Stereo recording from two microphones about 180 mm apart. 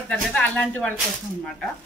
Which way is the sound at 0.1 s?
5° left (ahead or behind).